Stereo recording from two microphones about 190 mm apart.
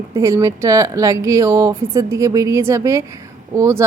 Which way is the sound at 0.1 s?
15° right (ahead or behind).